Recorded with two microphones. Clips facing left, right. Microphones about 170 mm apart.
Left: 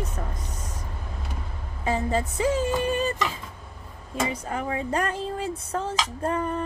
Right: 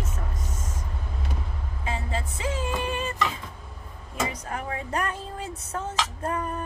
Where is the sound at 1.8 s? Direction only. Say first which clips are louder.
Left 7 dB; 40° left (ahead or behind).